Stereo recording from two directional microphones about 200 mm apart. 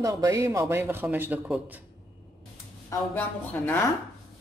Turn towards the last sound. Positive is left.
turn(degrees=10)  # may be behind; listen again after turning